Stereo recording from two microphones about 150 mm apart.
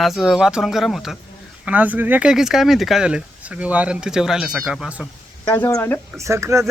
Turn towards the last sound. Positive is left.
turn(degrees=-20)  # may be behind; listen again after turning